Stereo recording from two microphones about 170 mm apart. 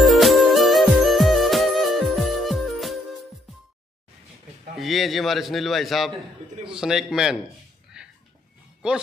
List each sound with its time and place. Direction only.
0.0 s music: centre (ahead or behind)
4.7 s a man's voice: centre (ahead or behind)
8.0 s a sound: 5° right (ahead or behind)
8.8 s a man's voice: 5° right (ahead or behind)